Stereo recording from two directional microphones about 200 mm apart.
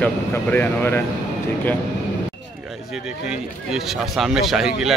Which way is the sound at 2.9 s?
5° right (ahead or behind).